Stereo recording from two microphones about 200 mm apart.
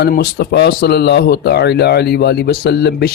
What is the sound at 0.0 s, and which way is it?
A man's voice, 55° left (ahead or behind).